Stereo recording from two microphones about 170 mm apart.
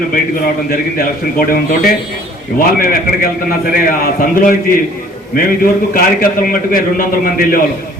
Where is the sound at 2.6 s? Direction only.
55° left (ahead or behind).